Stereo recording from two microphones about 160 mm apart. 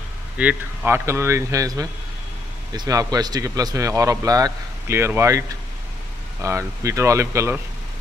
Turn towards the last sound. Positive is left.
turn(degrees=-15)  # may be behind; listen again after turning